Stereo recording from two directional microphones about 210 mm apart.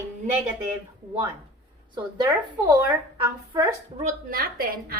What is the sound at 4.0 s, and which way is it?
Speech, 40° right (ahead or behind).